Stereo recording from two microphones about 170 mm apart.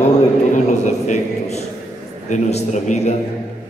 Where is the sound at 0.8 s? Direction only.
45° left (ahead or behind).